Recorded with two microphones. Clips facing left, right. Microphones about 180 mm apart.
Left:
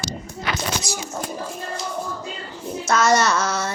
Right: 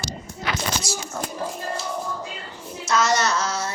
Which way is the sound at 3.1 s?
55° left (ahead or behind).